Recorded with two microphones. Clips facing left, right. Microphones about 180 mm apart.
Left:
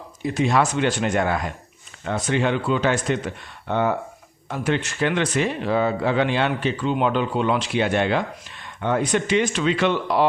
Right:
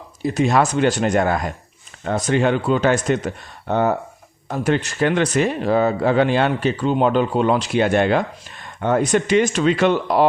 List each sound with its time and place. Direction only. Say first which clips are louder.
0.2 s speech: right 3 dB; 45° right (ahead or behind)